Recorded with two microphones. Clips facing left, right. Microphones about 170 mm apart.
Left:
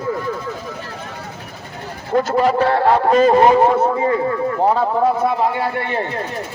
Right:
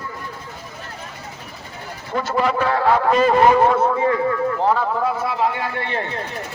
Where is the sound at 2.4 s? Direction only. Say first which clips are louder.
Left 2 dB; 35° left (ahead or behind).